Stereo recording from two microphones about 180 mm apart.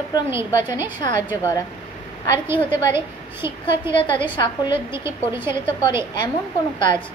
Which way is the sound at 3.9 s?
30° left (ahead or behind).